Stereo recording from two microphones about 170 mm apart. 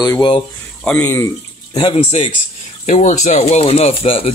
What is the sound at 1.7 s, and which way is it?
Speech, 35° left (ahead or behind).